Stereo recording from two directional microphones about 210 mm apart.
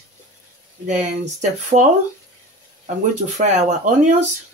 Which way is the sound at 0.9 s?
35° right (ahead or behind).